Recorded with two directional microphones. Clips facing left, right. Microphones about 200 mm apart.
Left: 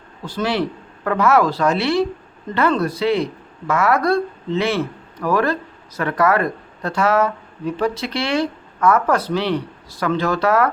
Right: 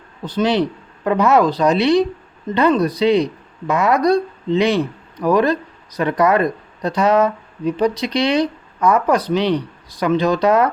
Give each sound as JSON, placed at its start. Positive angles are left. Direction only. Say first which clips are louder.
{"t": 0.3, "sound": "speech", "louder": "right 4 dB", "side_deg": -20}